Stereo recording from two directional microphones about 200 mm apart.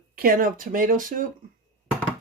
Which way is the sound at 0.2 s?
45° right (ahead or behind).